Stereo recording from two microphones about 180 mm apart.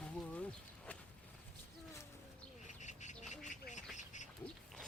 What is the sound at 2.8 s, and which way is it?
Duck, 40° left (ahead or behind).